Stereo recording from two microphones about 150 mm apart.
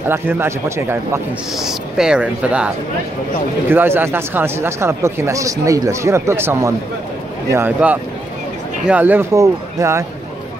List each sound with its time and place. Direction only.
0.1 s speech: 15° right (ahead or behind)
1.5 s speech: centre (ahead or behind)
3.7 s speech: 15° right (ahead or behind)